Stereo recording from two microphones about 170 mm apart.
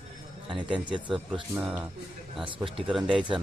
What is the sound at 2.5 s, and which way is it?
Speech, 30° right (ahead or behind).